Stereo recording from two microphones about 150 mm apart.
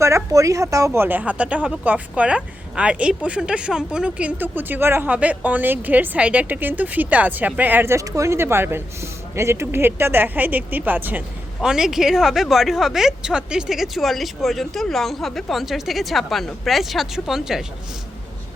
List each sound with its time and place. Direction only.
0.0 s a woman's voice: 20° right (ahead or behind); by 17.7 s centre (ahead or behind)